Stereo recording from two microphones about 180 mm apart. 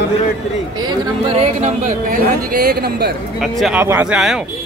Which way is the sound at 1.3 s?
35° right (ahead or behind).